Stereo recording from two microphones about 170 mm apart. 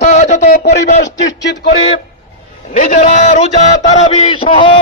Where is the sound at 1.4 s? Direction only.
90° left.